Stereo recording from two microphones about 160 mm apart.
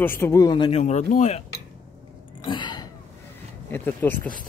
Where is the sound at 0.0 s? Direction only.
15° left (ahead or behind); by 1.4 s 45° left (ahead or behind).